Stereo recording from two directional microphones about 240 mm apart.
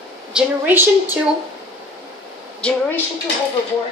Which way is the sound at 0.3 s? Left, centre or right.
Centre.